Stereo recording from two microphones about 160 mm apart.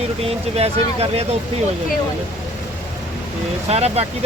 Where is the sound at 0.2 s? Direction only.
40° right (ahead or behind).